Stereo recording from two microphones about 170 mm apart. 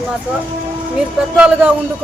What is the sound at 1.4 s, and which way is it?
Speech, 5° right (ahead or behind).